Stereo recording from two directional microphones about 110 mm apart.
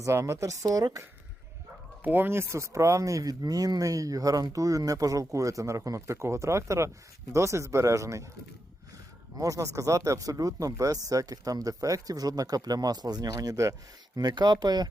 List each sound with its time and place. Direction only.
0.0 s speech: 30° right (ahead or behind)
2.0 s speech: 20° right (ahead or behind)
9.4 s speech: 30° right (ahead or behind)